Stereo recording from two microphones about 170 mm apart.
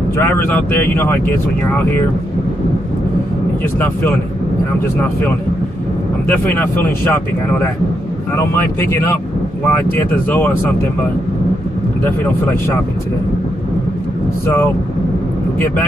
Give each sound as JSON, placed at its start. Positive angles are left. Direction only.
{"t": 0.2, "sound": "speech", "side_deg": 10}
{"t": 6.2, "sound": "speech", "side_deg": 10}
{"t": 8.9, "sound": "speech", "side_deg": 15}
{"t": 12.0, "sound": "speech", "side_deg": 10}